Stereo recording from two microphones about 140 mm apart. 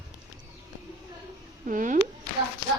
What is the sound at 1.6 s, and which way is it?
Speech, 70° right (ahead or behind).